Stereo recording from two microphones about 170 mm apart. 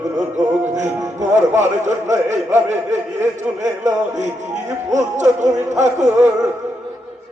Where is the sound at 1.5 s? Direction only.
45° right (ahead or behind).